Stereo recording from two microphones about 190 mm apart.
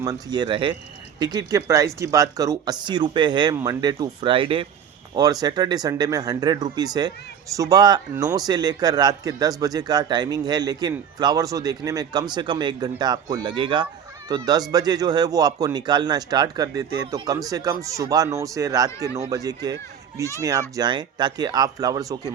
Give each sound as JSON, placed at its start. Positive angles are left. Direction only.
{"t": 0.0, "sound": "speech", "side_deg": -20}